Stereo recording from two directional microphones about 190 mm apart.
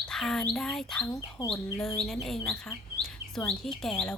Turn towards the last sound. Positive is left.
turn(degrees=5)  # may be behind; listen again after turning